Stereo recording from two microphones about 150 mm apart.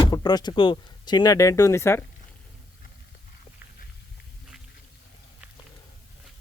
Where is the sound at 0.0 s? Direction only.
25° left (ahead or behind).